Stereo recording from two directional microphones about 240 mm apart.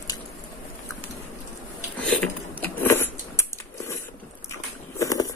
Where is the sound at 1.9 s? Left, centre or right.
Centre.